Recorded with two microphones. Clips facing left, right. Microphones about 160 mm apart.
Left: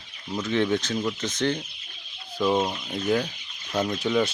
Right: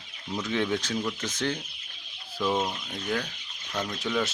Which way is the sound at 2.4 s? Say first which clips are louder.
Left 4 dB; 15° left (ahead or behind).